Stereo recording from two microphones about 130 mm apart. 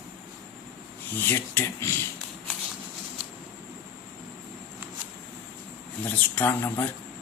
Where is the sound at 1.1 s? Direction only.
15° left (ahead or behind).